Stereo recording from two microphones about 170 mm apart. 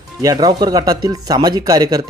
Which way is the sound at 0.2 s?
20° right (ahead or behind).